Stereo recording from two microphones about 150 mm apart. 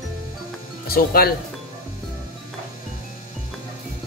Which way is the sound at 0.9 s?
90° left.